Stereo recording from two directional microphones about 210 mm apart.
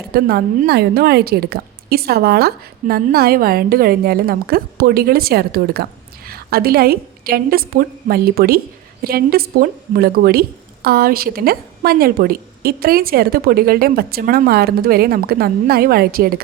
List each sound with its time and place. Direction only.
0.1 s a woman's voice: 50° right (ahead or behind)